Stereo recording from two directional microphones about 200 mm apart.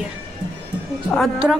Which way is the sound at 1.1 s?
Centre (ahead or behind).